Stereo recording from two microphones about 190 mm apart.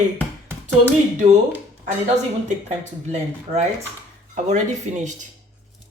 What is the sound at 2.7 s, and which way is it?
Speech, 35° right (ahead or behind).